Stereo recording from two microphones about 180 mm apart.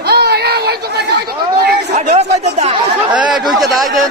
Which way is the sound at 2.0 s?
40° right (ahead or behind).